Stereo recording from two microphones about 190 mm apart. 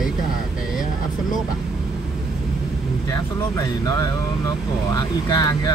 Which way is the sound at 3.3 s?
15° left (ahead or behind).